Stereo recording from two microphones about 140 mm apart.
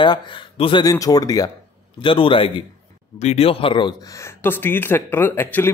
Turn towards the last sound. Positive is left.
turn(degrees=15)  # may be behind; listen again after turning